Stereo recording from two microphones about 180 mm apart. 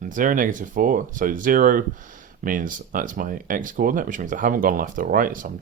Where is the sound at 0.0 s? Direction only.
45° right (ahead or behind).